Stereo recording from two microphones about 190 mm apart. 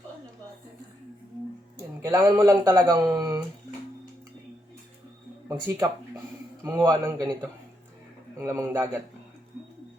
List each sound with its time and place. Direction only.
2.0 s speech: 20° right (ahead or behind)
5.5 s a man's voice: 10° right (ahead or behind)
8.4 s a man's voice: 15° right (ahead or behind)